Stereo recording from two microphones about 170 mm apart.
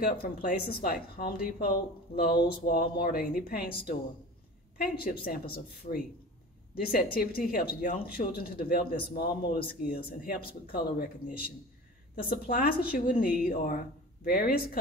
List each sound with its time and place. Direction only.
0.0 s a man's voice: 60° left (ahead or behind)